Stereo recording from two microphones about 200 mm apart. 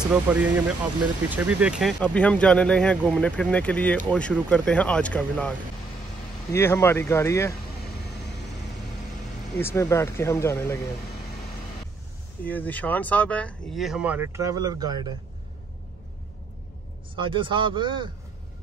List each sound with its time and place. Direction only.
0.1 s speech: 5° right (ahead or behind)
6.5 s speech: 10° left (ahead or behind)
9.6 s speech: 15° left (ahead or behind)
12.4 s speech: 10° left (ahead or behind); by 15.1 s 20° right (ahead or behind)
17.1 s speech: 25° right (ahead or behind)